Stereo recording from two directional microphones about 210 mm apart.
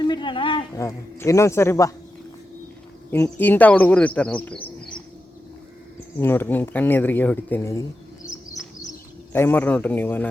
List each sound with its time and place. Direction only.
0.0 s speech: 20° left (ahead or behind)
3.1 s speech: 10° left (ahead or behind)
6.1 s speech: 10° left (ahead or behind)
9.3 s speech: 10° left (ahead or behind)